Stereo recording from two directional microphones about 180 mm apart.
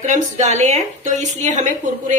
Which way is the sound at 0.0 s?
40° right (ahead or behind).